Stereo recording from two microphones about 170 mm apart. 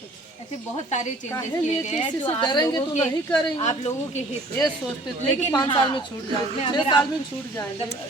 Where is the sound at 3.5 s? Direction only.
40° left (ahead or behind).